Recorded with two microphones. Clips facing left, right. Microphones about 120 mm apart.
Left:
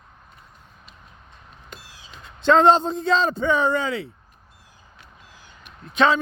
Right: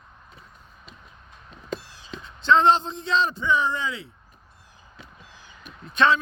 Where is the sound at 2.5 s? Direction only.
45° left (ahead or behind).